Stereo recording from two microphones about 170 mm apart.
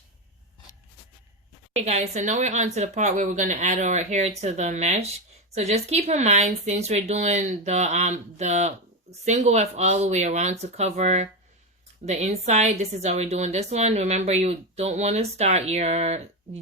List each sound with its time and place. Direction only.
1.7 s speech: 40° right (ahead or behind)